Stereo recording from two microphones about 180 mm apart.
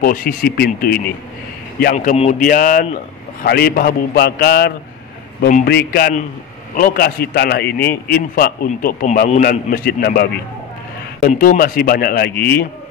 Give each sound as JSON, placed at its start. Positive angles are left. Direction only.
{"t": 0.0, "sound": "speech", "side_deg": 50}
{"t": 2.3, "sound": "a man's voice", "side_deg": 50}